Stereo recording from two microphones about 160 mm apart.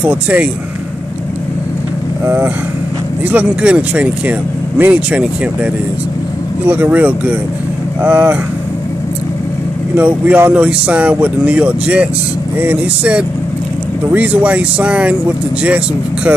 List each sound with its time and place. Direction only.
0.0 s speech: 10° right (ahead or behind)
2.2 s speech: 15° right (ahead or behind)
9.9 s speech: 10° right (ahead or behind)